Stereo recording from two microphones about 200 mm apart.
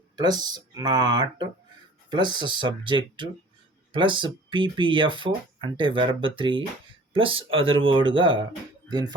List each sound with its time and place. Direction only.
0.2 s speech: 20° right (ahead or behind)